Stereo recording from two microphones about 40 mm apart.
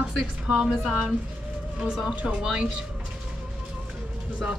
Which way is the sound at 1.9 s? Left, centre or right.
Centre.